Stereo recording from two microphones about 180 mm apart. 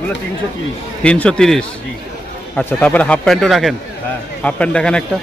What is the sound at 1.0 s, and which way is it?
A man's voice, 5° left (ahead or behind).